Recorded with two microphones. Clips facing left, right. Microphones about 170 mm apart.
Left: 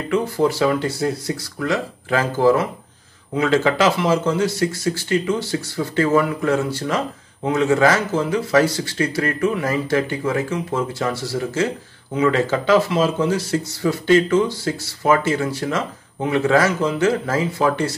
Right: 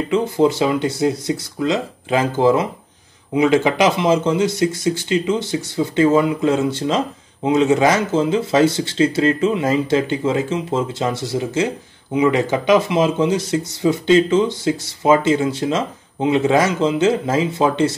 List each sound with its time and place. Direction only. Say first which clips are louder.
0.1 s speech: right 2 dB; 20° right (ahead or behind)